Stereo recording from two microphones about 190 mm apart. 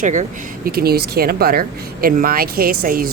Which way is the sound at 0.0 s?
40° right (ahead or behind).